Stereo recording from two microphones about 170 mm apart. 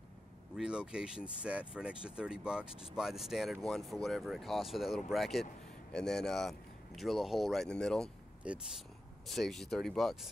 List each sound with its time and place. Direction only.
0.6 s speech: 5° right (ahead or behind)
8.4 s speech: 5° right (ahead or behind)